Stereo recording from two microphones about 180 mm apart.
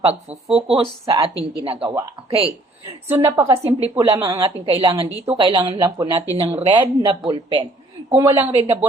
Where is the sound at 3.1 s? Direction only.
15° right (ahead or behind); by 5.9 s 30° right (ahead or behind).